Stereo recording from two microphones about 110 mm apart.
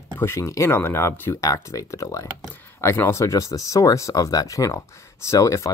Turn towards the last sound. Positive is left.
turn(degrees=30)  # may be behind; listen again after turning